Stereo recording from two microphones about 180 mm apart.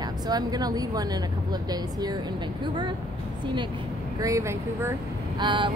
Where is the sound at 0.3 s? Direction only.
20° right (ahead or behind).